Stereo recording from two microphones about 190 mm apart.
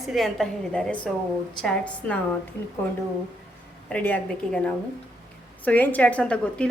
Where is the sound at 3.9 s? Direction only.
10° left (ahead or behind).